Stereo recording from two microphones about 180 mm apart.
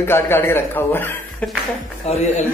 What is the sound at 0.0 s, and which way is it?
A man's voice, 15° left (ahead or behind).